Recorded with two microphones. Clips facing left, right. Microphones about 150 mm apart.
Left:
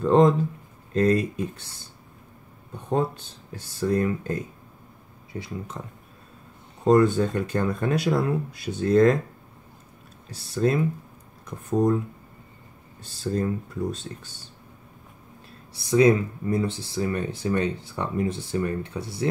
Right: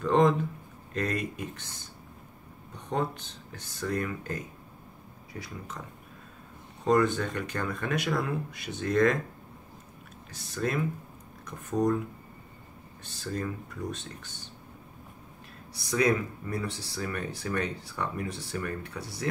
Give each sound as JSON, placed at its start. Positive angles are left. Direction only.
{"t": 0.0, "sound": "speech", "side_deg": 30}
{"t": 3.5, "sound": "speech", "side_deg": 30}
{"t": 6.8, "sound": "speech", "side_deg": 30}
{"t": 10.2, "sound": "speech", "side_deg": 30}
{"t": 13.2, "sound": "speech", "side_deg": 30}
{"t": 15.7, "sound": "speech", "side_deg": 25}